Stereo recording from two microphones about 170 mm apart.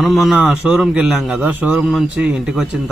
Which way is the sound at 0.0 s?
Centre (ahead or behind).